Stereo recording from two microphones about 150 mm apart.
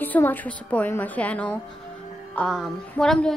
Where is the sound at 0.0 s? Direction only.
10° left (ahead or behind).